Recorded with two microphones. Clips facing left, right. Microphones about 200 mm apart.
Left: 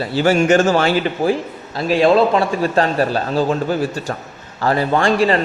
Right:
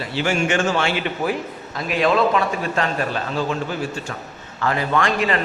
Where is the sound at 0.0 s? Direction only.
40° left (ahead or behind).